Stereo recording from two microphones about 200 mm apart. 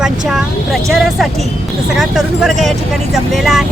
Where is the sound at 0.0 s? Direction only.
Centre (ahead or behind).